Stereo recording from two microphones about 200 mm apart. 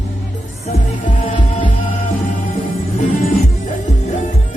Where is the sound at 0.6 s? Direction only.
40° left (ahead or behind).